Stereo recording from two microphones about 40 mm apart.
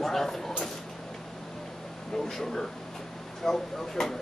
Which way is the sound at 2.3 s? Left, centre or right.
Centre.